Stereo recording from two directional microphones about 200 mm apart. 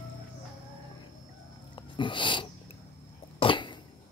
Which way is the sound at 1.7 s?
25° left (ahead or behind).